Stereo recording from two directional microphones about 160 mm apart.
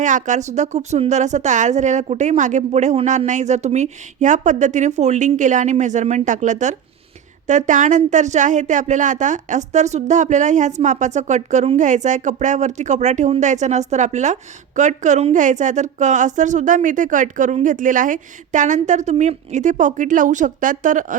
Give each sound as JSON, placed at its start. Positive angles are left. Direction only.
{"t": 0.0, "sound": "speech", "side_deg": -50}